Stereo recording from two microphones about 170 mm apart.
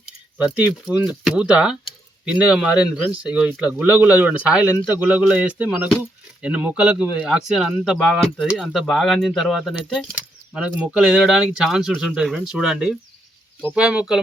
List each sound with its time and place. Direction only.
0.4 s speech: 5° right (ahead or behind)